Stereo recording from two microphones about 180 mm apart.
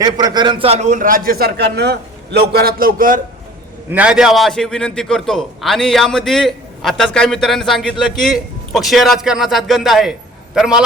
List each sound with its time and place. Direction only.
0.0 s a man's voice: 20° right (ahead or behind); by 3.2 s 50° right (ahead or behind)
3.9 s a man's voice: 5° right (ahead or behind)